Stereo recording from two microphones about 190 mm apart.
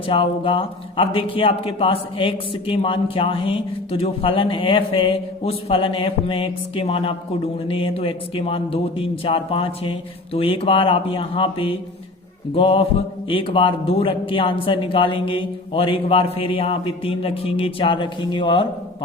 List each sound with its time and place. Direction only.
0.1 s speech: 25° left (ahead or behind)